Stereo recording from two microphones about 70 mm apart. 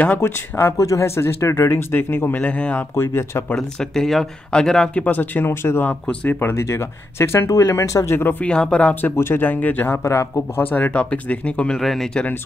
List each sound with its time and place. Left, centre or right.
0.2 s speech: left
0.7 s speech: left
2.4 s speech: centre
2.9 s speech: left
3.5 s speech: centre
5.0 s speech: left
5.5 s speech: left
5.9 s speech: left
6.5 s speech: left
8.4 s speech: centre
9.1 s speech: left
10.0 s speech: left
10.6 s speech: left
11.7 s speech: centre